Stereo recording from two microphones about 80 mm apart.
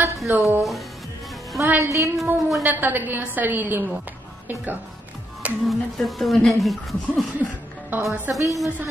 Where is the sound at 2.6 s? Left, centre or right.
Right.